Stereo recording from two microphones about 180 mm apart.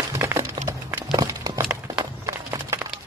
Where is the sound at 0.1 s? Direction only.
15° right (ahead or behind).